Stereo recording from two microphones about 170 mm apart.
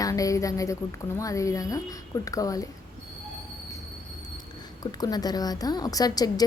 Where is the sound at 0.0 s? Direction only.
20° left (ahead or behind).